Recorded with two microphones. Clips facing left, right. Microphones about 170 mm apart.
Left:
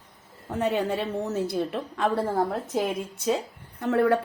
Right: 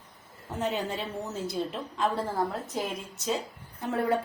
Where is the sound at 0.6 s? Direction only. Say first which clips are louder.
Left 5 dB; 60° left (ahead or behind).